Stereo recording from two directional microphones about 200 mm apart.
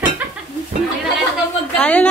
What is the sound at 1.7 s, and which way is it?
Speech, 5° left (ahead or behind).